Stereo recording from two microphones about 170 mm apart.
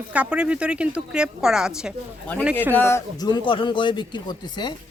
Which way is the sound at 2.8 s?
15° left (ahead or behind).